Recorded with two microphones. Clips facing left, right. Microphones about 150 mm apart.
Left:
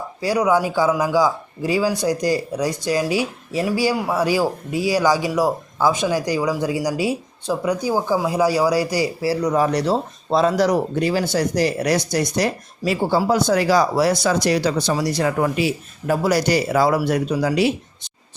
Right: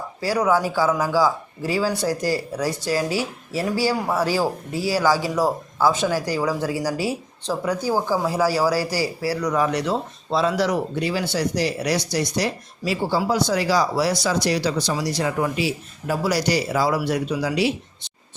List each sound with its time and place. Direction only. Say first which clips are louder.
0.2 s a man's voice: left 2 dB; 15° left (ahead or behind)
9.6 s speech: left 3 dB; 35° left (ahead or behind)